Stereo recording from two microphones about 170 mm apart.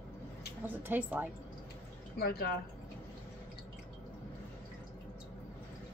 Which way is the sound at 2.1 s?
65° left (ahead or behind).